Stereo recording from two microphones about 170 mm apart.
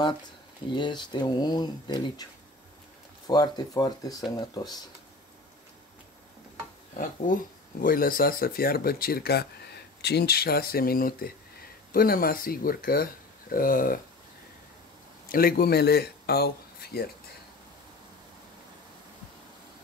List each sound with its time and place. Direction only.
0.7 s speech: 30° left (ahead or behind)
3.3 s speech: 25° left (ahead or behind)
7.3 s speech: 50° left (ahead or behind)
15.2 s speech: 60° left (ahead or behind)